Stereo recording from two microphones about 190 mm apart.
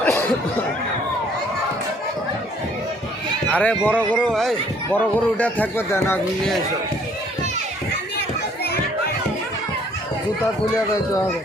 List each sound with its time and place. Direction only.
0.0 s a sound: 10° left (ahead or behind)
3.5 s a man's voice: 5° left (ahead or behind)
10.4 s a man's voice: 15° left (ahead or behind)